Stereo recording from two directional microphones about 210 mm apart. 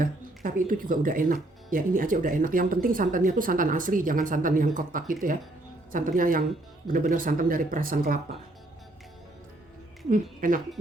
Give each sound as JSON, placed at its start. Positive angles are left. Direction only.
{"t": 0.0, "sound": "speech", "side_deg": -40}
{"t": 10.1, "sound": "speech", "side_deg": -40}